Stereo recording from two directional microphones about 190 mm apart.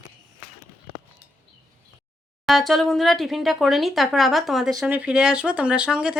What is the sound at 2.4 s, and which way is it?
Speech, centre (ahead or behind).